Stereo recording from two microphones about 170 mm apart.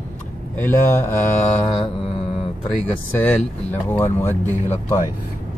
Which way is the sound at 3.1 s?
10° left (ahead or behind).